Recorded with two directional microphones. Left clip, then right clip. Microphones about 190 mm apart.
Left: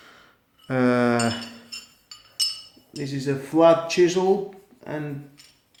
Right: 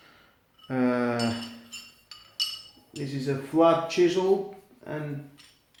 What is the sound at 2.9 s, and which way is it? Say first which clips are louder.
A man's voice: left 3 dB; 45° left (ahead or behind).